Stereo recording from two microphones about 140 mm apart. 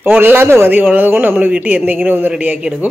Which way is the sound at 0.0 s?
15° right (ahead or behind).